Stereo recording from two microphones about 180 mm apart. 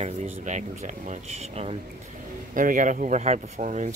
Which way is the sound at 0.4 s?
40° right (ahead or behind).